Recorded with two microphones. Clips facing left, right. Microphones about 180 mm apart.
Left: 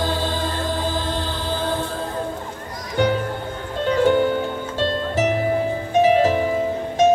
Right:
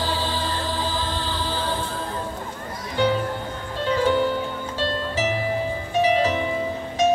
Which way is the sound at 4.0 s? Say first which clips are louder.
Left 4 dB; 55° left (ahead or behind).